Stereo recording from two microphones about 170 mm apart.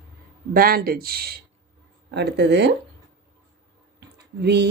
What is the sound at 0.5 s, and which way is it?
Speech, 60° right (ahead or behind).